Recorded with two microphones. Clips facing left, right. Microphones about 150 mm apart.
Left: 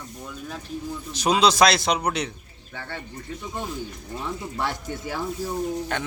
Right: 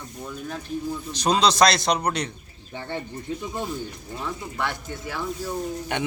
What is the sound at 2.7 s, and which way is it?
Speech, 25° right (ahead or behind).